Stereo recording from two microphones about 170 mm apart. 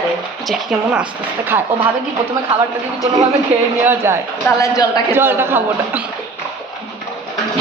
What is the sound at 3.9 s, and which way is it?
Speech, 15° right (ahead or behind).